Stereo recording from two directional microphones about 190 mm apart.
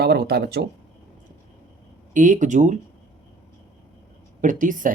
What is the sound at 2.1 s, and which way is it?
Speech, 45° right (ahead or behind).